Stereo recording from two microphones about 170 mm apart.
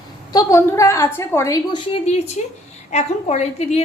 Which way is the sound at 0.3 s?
20° left (ahead or behind).